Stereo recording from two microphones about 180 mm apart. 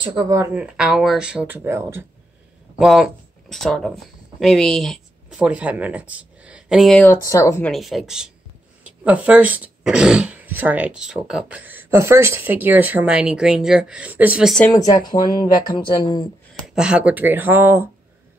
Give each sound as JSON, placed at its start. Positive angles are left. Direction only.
{"t": 0.0, "sound": "a woman's voice", "side_deg": -25}
{"t": 0.6, "sound": "speech", "side_deg": -5}
{"t": 2.8, "sound": "speech", "side_deg": 0}
{"t": 7.7, "sound": "speech", "side_deg": 0}
{"t": 14.6, "sound": "speech", "side_deg": 20}
{"t": 16.6, "sound": "speech", "side_deg": -5}